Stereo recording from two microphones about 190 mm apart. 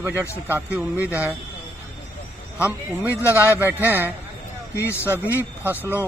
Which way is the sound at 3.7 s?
10° right (ahead or behind).